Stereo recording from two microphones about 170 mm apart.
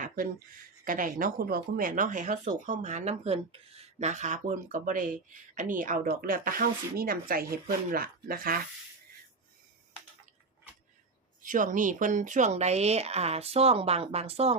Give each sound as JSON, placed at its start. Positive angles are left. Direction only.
{"t": 0.9, "sound": "speech", "side_deg": -55}
{"t": 11.4, "sound": "speech", "side_deg": -50}